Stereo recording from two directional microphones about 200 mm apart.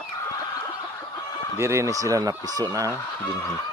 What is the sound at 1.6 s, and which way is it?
Speech, 15° right (ahead or behind).